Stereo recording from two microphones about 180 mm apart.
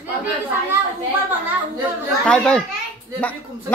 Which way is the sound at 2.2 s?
5° left (ahead or behind).